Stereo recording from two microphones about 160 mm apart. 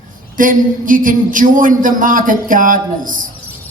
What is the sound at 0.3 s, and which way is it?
A man's voice, 55° right (ahead or behind).